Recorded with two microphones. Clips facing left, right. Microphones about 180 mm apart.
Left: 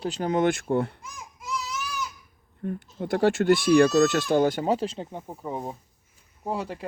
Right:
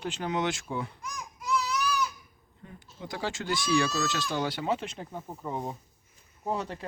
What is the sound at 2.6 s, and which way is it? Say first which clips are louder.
Speech: left 12 dB; 60° left (ahead or behind).